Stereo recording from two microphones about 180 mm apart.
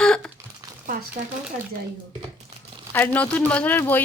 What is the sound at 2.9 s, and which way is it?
Speech, 10° left (ahead or behind).